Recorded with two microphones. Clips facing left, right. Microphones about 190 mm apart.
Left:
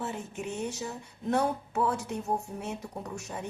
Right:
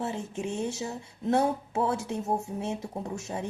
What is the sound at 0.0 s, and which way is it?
A woman's voice, 25° right (ahead or behind).